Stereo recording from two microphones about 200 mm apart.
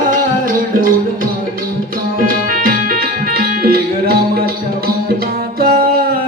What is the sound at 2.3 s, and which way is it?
Music, 45° right (ahead or behind).